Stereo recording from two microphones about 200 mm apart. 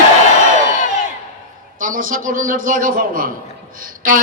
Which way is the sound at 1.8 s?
45° right (ahead or behind).